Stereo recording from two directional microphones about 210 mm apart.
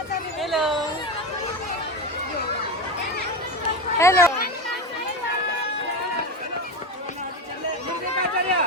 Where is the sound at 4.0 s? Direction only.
15° left (ahead or behind).